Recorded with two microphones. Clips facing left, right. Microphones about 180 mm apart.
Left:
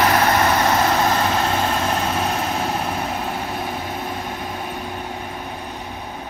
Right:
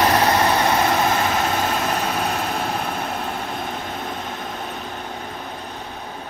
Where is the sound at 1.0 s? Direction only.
Centre (ahead or behind).